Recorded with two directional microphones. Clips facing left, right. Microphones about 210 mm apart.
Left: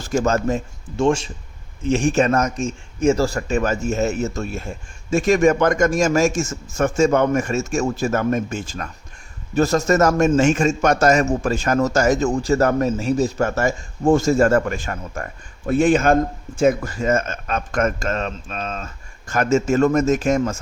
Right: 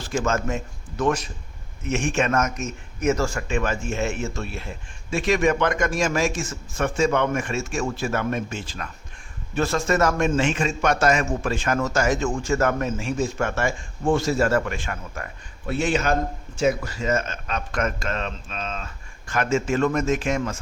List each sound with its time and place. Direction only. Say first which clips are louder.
0.0 s a man's voice: left 5 dB; 40° left (ahead or behind)